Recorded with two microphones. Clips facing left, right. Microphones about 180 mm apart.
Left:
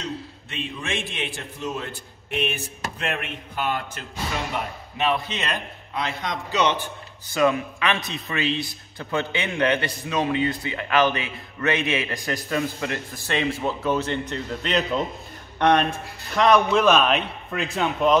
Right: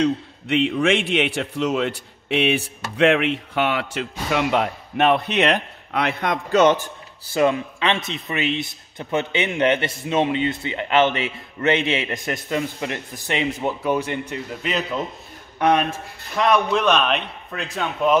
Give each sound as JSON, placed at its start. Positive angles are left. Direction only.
{"t": 0.0, "sound": "a man's voice", "side_deg": -65}
{"t": 7.3, "sound": "a man's voice", "side_deg": -25}